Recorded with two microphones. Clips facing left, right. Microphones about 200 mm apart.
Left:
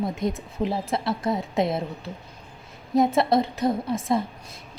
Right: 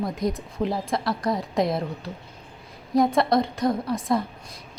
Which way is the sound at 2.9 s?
25° left (ahead or behind).